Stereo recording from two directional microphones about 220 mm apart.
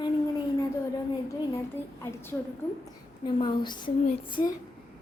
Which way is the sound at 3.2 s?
20° left (ahead or behind).